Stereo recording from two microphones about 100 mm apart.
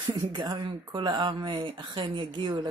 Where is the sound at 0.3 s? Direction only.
50° right (ahead or behind).